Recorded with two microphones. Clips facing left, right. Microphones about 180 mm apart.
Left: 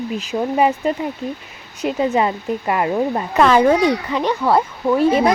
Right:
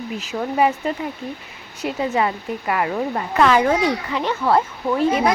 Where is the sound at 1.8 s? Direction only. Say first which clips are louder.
Left 3 dB; 25° left (ahead or behind).